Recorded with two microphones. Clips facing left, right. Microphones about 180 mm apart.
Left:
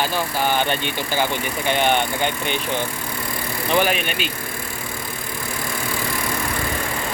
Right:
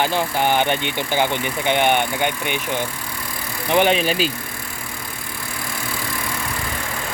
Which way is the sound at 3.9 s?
30° right (ahead or behind).